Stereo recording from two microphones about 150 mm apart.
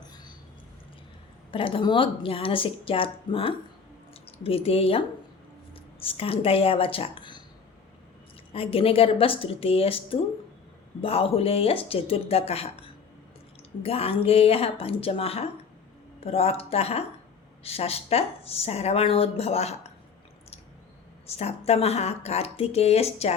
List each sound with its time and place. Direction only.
1.5 s a woman's voice: 35° left (ahead or behind)
8.5 s a woman's voice: 40° left (ahead or behind)
21.2 s speech: 45° left (ahead or behind)